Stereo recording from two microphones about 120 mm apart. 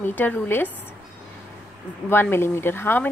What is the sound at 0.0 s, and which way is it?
Speech, 15° left (ahead or behind).